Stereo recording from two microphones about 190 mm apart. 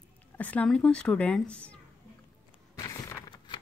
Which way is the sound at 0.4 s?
5° left (ahead or behind).